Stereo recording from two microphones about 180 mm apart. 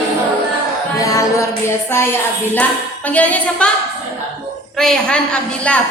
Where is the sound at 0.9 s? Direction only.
20° left (ahead or behind).